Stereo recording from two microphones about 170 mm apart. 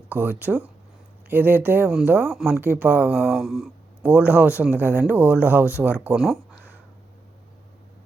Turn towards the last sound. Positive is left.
turn(degrees=-5)  # may be behind; listen again after turning